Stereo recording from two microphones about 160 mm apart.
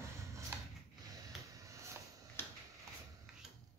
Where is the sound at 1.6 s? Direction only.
20° right (ahead or behind).